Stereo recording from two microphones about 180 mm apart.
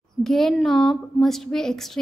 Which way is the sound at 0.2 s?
Centre (ahead or behind).